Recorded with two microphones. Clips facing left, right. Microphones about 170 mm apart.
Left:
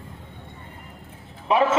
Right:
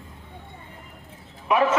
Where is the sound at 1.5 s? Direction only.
30° left (ahead or behind).